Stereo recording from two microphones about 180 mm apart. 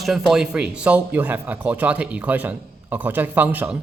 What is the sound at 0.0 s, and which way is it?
Speech, centre (ahead or behind).